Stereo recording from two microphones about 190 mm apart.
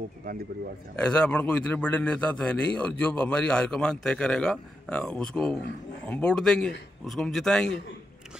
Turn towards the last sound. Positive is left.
turn(degrees=5)  # may be behind; listen again after turning